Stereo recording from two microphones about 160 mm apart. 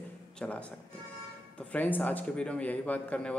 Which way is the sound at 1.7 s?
10° left (ahead or behind).